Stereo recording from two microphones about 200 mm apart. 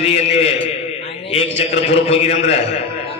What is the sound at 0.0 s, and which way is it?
A man's voice, 30° left (ahead or behind).